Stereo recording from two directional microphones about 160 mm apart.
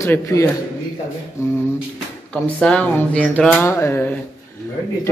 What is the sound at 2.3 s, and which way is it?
Speech, 5° left (ahead or behind).